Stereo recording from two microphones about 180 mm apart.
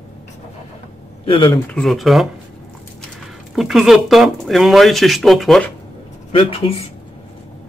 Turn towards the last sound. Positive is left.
turn(degrees=35)  # may be behind; listen again after turning